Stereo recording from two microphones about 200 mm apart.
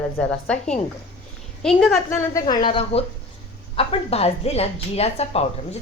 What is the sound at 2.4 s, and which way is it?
A woman's voice, 25° left (ahead or behind).